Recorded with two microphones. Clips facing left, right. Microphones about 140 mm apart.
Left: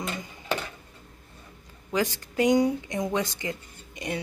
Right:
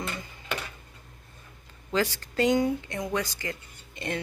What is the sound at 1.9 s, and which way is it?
Speech, 15° left (ahead or behind).